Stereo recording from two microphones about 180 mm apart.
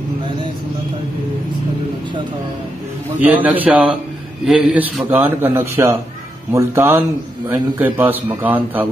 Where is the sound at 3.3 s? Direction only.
10° right (ahead or behind).